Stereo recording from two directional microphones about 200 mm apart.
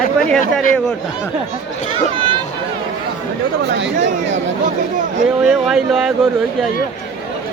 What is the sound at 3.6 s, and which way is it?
Speech, 60° right (ahead or behind).